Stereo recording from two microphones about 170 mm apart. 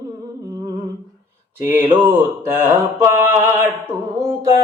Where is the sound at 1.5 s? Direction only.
10° right (ahead or behind).